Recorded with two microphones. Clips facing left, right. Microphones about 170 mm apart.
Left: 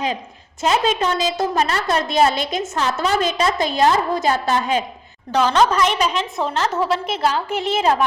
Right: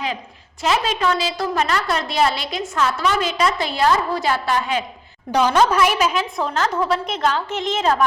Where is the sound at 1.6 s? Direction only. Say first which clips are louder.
Right 2 dB; 35° left (ahead or behind).